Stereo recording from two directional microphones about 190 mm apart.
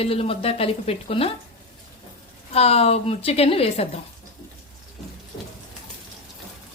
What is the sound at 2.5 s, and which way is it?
Speech, 30° left (ahead or behind).